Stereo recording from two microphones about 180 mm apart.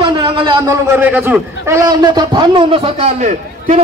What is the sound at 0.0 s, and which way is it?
A man's voice, 25° right (ahead or behind).